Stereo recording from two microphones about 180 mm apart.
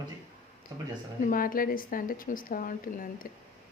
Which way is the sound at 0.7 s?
20° right (ahead or behind).